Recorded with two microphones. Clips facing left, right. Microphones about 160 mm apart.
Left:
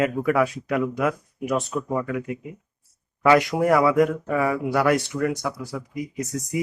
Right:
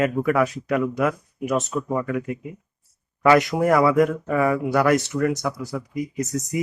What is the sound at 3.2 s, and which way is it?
A man's voice, 15° left (ahead or behind).